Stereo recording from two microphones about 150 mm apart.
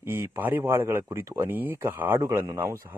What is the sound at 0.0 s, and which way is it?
Speech, 15° right (ahead or behind).